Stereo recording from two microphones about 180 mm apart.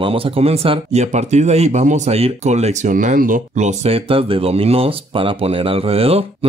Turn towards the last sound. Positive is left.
turn(degrees=-35)  # may be behind; listen again after turning